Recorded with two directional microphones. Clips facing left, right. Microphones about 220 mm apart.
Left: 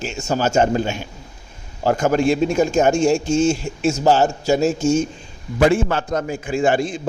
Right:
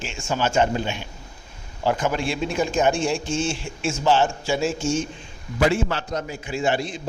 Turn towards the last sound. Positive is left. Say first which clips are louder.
# left 6 dB
turn(degrees=50)  # may be behind; listen again after turning